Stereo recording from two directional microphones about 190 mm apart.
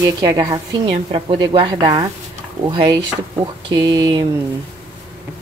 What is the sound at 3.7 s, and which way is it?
Speech, 25° right (ahead or behind).